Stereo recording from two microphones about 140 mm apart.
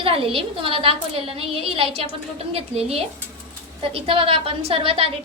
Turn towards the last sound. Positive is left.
turn(degrees=-40)  # may be behind; listen again after turning